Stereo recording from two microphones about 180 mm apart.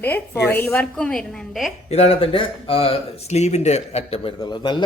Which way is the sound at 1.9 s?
35° left (ahead or behind).